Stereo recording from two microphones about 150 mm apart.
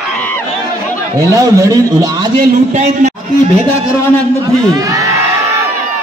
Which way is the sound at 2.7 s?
55° right (ahead or behind).